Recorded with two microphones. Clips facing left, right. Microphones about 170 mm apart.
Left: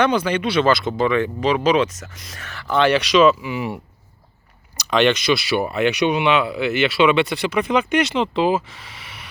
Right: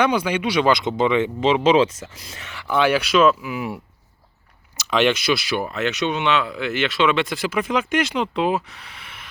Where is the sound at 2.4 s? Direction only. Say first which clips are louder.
Left 2 dB; 15° right (ahead or behind); by 3.8 s centre (ahead or behind).